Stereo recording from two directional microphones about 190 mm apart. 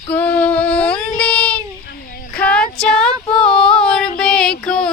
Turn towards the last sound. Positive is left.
turn(degrees=5)  # may be behind; listen again after turning